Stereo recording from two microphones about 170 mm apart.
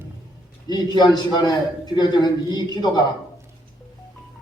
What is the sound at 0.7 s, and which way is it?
A man's voice, 25° left (ahead or behind).